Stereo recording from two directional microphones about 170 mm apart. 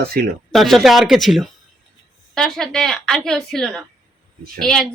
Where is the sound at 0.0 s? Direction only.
60° right (ahead or behind).